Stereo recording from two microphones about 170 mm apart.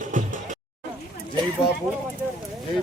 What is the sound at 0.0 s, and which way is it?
Music, 50° right (ahead or behind).